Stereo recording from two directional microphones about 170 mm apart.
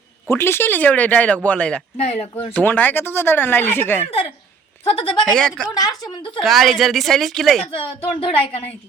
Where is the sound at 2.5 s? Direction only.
10° left (ahead or behind).